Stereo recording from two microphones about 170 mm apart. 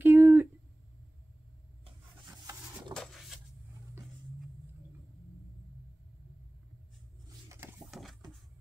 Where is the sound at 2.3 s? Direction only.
20° right (ahead or behind).